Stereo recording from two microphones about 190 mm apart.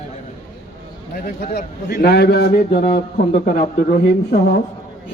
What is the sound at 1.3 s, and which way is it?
A woman's voice, 45° left (ahead or behind).